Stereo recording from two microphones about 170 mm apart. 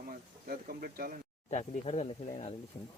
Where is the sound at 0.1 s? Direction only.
60° right (ahead or behind).